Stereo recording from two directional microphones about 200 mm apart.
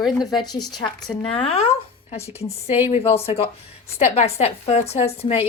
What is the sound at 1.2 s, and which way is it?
A woman's voice, 30° left (ahead or behind).